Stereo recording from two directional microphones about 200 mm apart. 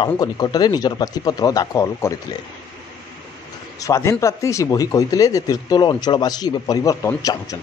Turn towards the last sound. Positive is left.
turn(degrees=15)  # may be behind; listen again after turning